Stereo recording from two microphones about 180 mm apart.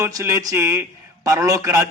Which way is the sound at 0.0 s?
15° right (ahead or behind).